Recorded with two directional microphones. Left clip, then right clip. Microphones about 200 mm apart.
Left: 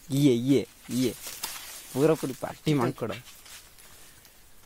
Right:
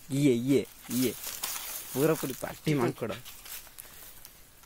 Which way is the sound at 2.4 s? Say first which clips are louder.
Left 2 dB; 30° left (ahead or behind).